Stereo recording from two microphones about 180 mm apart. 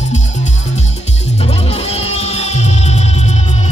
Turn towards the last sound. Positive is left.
turn(degrees=35)  # may be behind; listen again after turning